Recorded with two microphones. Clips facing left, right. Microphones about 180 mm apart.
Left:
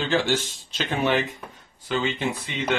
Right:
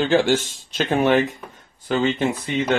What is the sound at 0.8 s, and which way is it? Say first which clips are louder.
Speech: right 6 dB; 45° right (ahead or behind).